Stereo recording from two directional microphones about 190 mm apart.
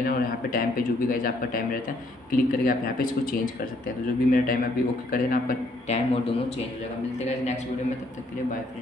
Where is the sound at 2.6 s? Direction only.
45° left (ahead or behind).